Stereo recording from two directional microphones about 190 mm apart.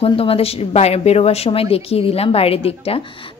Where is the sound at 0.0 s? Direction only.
30° left (ahead or behind).